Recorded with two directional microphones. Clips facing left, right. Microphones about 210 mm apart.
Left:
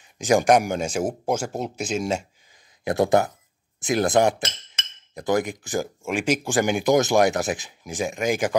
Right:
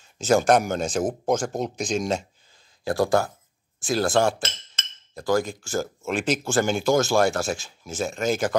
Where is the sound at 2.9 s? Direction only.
20° left (ahead or behind).